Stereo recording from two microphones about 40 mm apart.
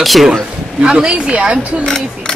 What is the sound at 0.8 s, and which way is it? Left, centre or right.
Speech, right.